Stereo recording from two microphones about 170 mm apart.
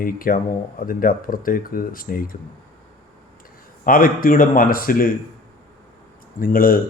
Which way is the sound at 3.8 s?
55° left (ahead or behind).